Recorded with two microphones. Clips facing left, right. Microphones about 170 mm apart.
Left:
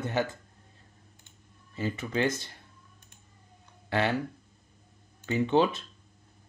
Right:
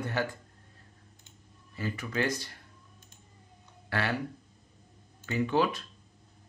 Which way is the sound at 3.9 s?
20° left (ahead or behind).